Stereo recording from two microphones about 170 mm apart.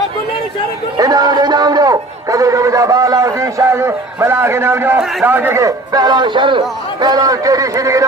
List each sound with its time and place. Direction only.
0.9 s a man's voice: 20° right (ahead or behind)